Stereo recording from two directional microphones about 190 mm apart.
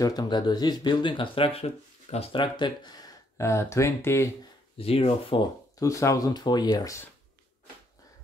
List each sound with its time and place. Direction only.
0.0 s speech: 20° left (ahead or behind)
4.7 s speech: 30° left (ahead or behind)
5.8 s speech: 15° left (ahead or behind)